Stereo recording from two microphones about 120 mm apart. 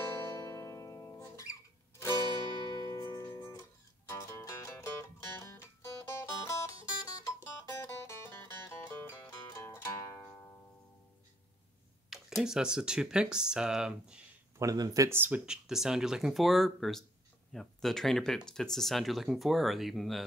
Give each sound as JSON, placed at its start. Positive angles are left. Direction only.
{"t": 0.2, "sound": "music", "side_deg": 25}
{"t": 4.1, "sound": "music", "side_deg": 20}
{"t": 12.1, "sound": "speech", "side_deg": -5}
{"t": 14.6, "sound": "speech", "side_deg": -30}